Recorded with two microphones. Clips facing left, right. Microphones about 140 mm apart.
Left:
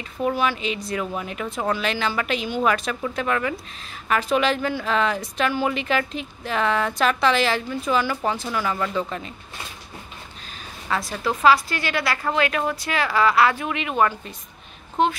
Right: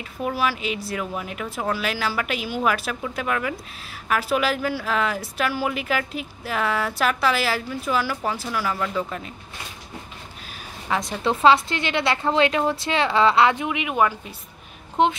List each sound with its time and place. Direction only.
0.0 s speech: 5° right (ahead or behind)
10.9 s speech: 20° right (ahead or behind)
15.0 s speech: 20° right (ahead or behind)